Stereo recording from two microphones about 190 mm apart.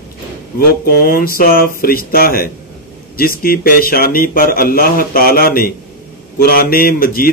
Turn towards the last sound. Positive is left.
turn(degrees=50)  # may be behind; listen again after turning